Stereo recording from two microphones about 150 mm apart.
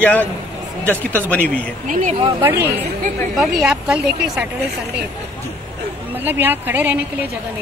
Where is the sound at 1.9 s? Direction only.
60° right (ahead or behind).